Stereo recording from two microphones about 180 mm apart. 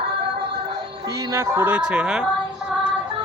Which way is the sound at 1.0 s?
20° right (ahead or behind).